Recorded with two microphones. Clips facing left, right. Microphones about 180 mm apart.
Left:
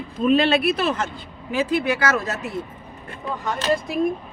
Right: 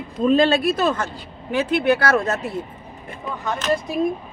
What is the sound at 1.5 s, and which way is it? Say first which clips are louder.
Speech: right 3 dB; 65° right (ahead or behind).